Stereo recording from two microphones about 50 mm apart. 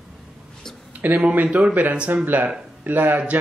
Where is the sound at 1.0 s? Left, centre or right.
Right.